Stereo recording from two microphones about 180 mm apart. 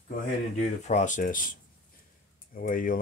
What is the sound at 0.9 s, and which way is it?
Speech, 40° left (ahead or behind).